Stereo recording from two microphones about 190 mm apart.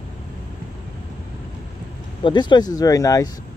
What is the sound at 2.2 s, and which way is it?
Speech, 25° left (ahead or behind).